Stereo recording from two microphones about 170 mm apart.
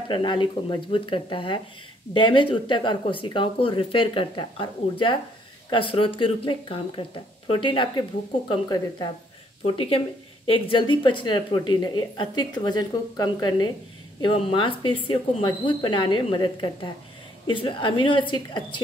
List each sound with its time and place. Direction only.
0.1 s speech: 30° left (ahead or behind)